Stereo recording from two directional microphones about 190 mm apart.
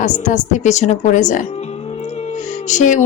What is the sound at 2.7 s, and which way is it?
Speech, 40° left (ahead or behind).